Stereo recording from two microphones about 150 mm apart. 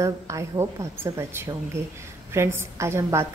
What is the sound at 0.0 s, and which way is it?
A woman's voice, 20° right (ahead or behind).